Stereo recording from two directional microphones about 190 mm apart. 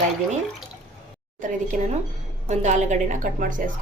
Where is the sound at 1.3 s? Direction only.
45° right (ahead or behind).